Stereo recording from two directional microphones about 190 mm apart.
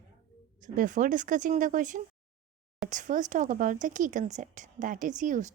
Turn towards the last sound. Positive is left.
turn(degrees=-40)  # may be behind; listen again after turning